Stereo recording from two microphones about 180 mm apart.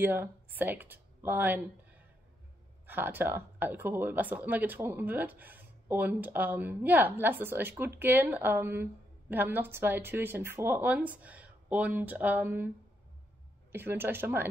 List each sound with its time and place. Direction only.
0.0 s speech: 10° right (ahead or behind)
2.9 s speech: 10° right (ahead or behind)